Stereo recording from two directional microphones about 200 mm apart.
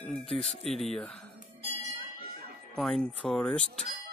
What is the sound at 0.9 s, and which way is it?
Speech, 5° left (ahead or behind).